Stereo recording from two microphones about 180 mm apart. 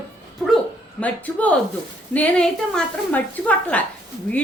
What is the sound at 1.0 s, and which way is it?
A woman's voice, 10° left (ahead or behind).